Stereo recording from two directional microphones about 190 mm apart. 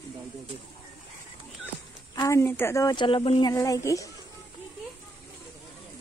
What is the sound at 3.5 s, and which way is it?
Speech, 20° left (ahead or behind).